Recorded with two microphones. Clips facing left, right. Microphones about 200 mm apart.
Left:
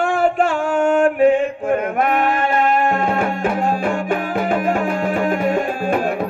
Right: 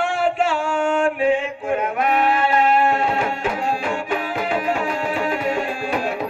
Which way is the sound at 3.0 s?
55° left (ahead or behind).